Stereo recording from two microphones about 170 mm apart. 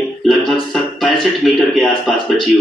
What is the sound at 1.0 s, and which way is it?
A man's voice, 5° left (ahead or behind).